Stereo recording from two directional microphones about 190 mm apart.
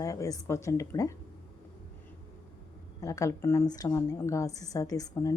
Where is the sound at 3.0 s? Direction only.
15° left (ahead or behind).